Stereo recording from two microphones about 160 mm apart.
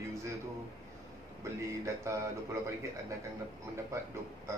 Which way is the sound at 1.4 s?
20° right (ahead or behind).